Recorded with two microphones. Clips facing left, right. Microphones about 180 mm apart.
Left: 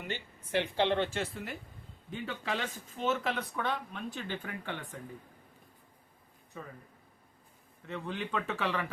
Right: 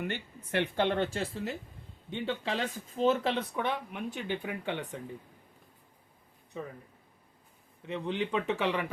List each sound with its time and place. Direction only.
0.1 s speech: 60° right (ahead or behind); by 3.4 s 30° right (ahead or behind)
3.5 s speech: 15° right (ahead or behind)
7.8 s speech: 20° right (ahead or behind)